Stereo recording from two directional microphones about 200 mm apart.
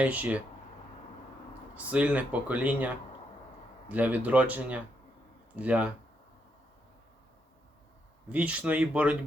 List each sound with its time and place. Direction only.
0.0 s speech: 5° right (ahead or behind)
1.7 s speech: 5° right (ahead or behind)
8.3 s speech: 5° right (ahead or behind)